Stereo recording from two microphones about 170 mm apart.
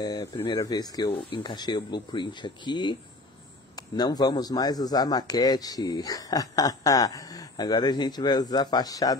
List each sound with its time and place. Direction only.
0.0 s a man's voice: 20° left (ahead or behind)